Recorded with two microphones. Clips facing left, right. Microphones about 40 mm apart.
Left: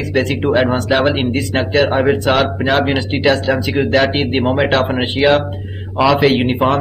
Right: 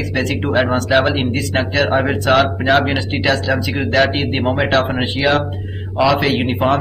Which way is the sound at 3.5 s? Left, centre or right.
Centre.